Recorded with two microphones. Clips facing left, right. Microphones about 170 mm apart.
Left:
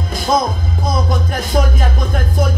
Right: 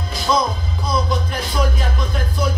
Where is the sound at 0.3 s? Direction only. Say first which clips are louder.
Left 3 dB; 50° left (ahead or behind).